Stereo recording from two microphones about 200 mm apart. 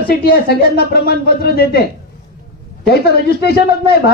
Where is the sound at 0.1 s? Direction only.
50° left (ahead or behind).